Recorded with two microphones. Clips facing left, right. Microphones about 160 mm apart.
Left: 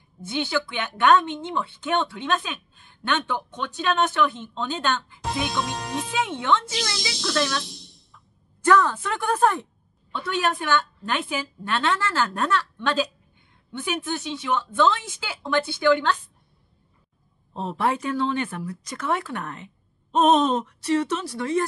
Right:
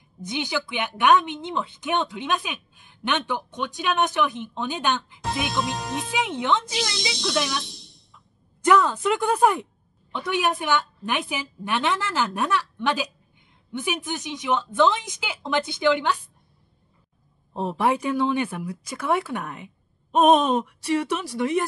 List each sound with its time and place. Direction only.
0.2 s speech: 15° right (ahead or behind)
5.5 s speech: centre (ahead or behind)
6.1 s speech: 15° right (ahead or behind)
7.6 s a sound: centre (ahead or behind)
8.6 s speech: 15° right (ahead or behind)
17.6 s speech: 15° right (ahead or behind)